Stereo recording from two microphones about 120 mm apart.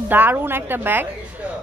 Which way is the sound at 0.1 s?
15° right (ahead or behind).